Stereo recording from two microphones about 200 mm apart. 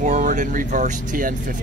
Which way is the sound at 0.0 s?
40° right (ahead or behind).